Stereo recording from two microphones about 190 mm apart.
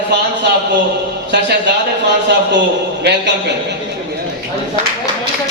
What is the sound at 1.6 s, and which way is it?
Speech, 65° right (ahead or behind).